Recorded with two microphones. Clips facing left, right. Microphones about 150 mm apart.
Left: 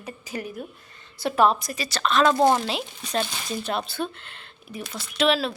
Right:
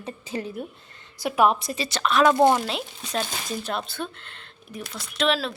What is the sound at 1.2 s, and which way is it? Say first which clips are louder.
Speech: even; 10° right (ahead or behind).